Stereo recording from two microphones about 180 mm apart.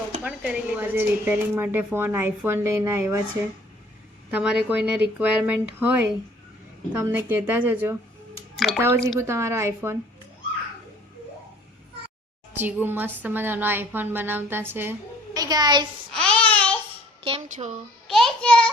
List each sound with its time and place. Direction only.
0.2 s speech: 5° right (ahead or behind)
4.3 s a woman's voice: 5° right (ahead or behind)
8.5 s speech: centre (ahead or behind)
9.1 s a woman's voice: 15° right (ahead or behind)
12.5 s a woman's voice: 10° right (ahead or behind)
16.1 s a sound: 5° left (ahead or behind)
17.2 s speech: 30° right (ahead or behind)
18.1 s a child's voice: centre (ahead or behind)